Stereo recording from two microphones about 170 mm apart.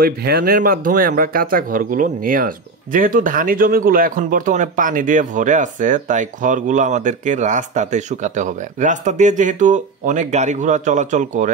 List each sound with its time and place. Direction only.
0.0 s speech: 65° right (ahead or behind); by 11.5 s 45° right (ahead or behind)